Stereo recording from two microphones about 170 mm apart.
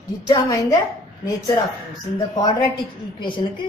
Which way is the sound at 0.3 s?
20° left (ahead or behind).